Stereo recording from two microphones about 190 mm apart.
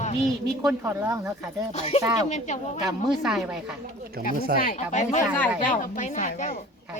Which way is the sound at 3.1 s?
Centre (ahead or behind).